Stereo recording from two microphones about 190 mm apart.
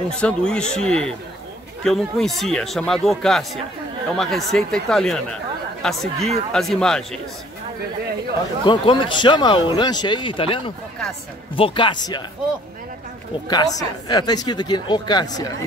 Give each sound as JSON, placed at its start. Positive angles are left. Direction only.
{"t": 0.2, "sound": "speech", "side_deg": 5}
{"t": 8.6, "sound": "speech", "side_deg": 25}
{"t": 13.5, "sound": "speech", "side_deg": 20}